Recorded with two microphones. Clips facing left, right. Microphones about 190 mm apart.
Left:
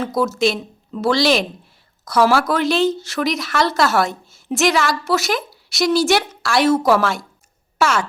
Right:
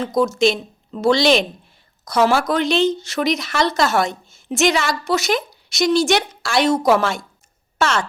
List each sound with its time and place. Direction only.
0.2 s speech: 5° left (ahead or behind)
6.7 s a woman's voice: 20° right (ahead or behind)
7.0 s speech: centre (ahead or behind)